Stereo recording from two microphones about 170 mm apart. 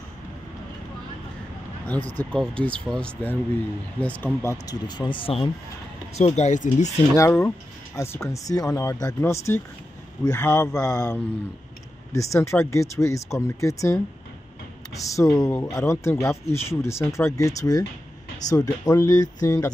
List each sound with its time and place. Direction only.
2.1 s speech: 5° left (ahead or behind); by 6.9 s 45° left (ahead or behind)
7.2 s speech: 15° left (ahead or behind)
15.0 s speech: 20° left (ahead or behind)